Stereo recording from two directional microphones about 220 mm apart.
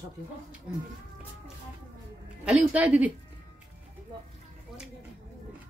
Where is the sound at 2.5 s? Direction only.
5° right (ahead or behind).